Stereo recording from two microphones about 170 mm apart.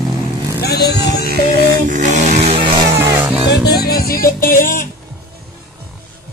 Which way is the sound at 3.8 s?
65° left (ahead or behind).